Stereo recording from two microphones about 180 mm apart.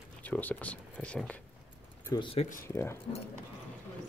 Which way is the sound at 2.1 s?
30° left (ahead or behind).